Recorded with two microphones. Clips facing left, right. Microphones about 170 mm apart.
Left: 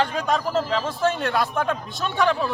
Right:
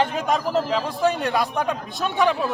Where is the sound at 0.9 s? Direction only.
15° right (ahead or behind).